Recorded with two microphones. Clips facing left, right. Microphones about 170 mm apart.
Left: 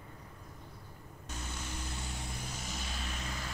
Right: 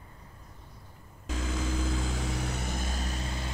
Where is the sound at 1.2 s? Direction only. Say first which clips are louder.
Right 10 dB; 90° right.